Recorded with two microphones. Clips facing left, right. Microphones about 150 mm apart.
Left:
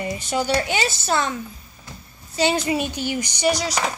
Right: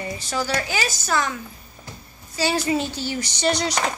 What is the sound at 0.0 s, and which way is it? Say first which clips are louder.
Speech: left 3 dB; 20° left (ahead or behind).